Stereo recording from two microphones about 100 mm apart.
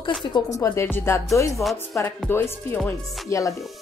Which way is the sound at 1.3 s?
30° left (ahead or behind).